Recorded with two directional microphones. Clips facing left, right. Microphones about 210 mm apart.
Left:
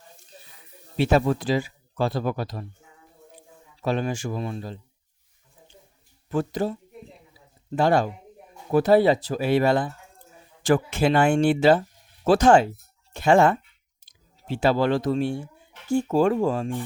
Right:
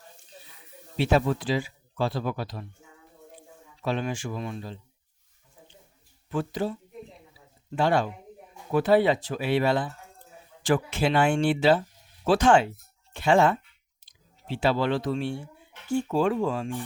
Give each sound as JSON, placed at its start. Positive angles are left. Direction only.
{"t": 0.9, "sound": "speech", "side_deg": 45}
{"t": 3.8, "sound": "speech", "side_deg": 40}
{"t": 6.3, "sound": "speech", "side_deg": 45}
{"t": 7.8, "sound": "speech", "side_deg": 40}